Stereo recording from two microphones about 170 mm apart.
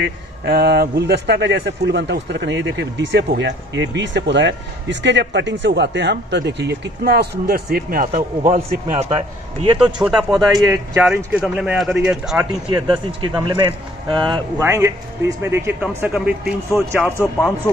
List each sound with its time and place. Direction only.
0.0 s speech: 65° right (ahead or behind)
8.5 s a man's voice: 40° right (ahead or behind)
9.8 s speech: 5° right (ahead or behind)
12.6 s a man's voice: 30° right (ahead or behind)
14.6 s speech: 15° right (ahead or behind)